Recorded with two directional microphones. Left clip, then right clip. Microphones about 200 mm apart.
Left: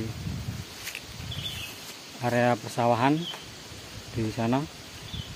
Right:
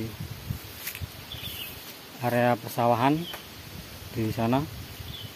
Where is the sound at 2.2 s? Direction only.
5° right (ahead or behind).